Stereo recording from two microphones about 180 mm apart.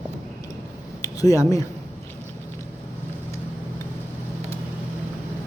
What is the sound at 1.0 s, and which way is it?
Speech, 20° left (ahead or behind).